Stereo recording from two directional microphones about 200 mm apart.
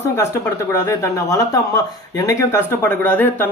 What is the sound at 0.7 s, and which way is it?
Speech, 15° left (ahead or behind).